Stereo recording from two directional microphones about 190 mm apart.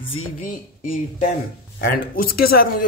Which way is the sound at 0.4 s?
45° left (ahead or behind).